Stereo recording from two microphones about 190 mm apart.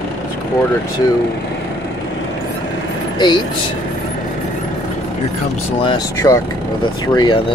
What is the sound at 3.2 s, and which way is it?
Speech, 25° left (ahead or behind).